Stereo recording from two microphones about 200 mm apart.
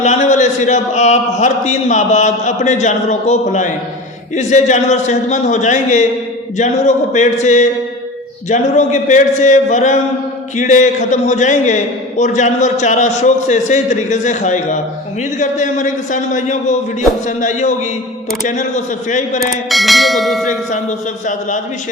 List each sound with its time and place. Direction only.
0.0 s a man's voice: 35° left (ahead or behind)
19.0 s a man's voice: 40° left (ahead or behind)
19.4 s bell: centre (ahead or behind)